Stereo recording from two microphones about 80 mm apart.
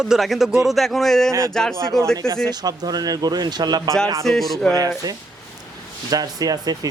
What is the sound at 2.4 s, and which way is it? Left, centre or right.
Speech, right.